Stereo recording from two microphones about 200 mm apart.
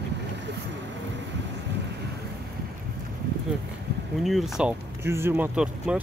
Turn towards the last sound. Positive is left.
turn(degrees=-5)  # may be behind; listen again after turning